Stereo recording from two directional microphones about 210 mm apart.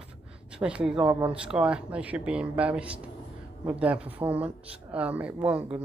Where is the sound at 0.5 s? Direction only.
5° right (ahead or behind).